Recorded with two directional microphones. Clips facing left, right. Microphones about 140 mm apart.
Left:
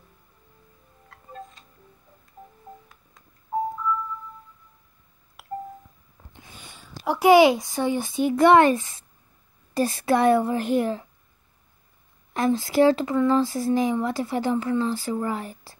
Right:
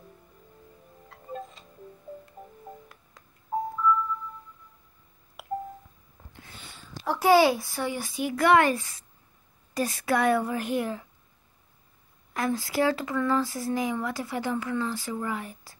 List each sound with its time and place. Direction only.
5.4 s telephone dialing: centre (ahead or behind)
6.3 s speech: 15° left (ahead or behind)
12.4 s speech: 25° left (ahead or behind)